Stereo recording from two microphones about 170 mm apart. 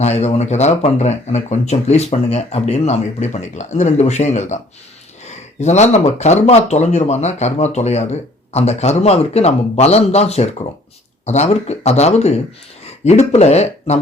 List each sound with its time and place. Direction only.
0.0 s speech: 40° left (ahead or behind)